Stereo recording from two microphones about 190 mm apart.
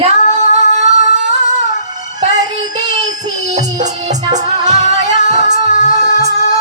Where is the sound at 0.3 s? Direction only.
35° right (ahead or behind).